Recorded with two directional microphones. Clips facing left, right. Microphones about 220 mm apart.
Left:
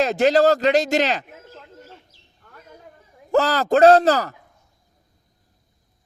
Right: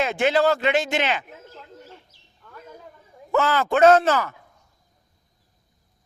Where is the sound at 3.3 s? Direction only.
35° left (ahead or behind).